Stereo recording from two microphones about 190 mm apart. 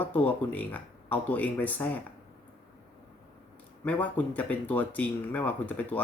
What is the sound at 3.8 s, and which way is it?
Speech, 10° left (ahead or behind).